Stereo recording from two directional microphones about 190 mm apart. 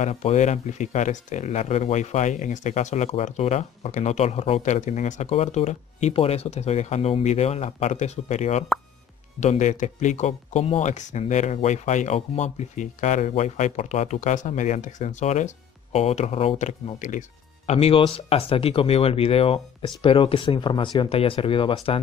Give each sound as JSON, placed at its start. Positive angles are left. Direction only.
{"t": 0.0, "sound": "speech", "side_deg": 35}